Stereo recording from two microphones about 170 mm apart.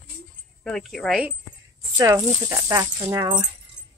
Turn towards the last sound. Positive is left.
turn(degrees=-20)  # may be behind; listen again after turning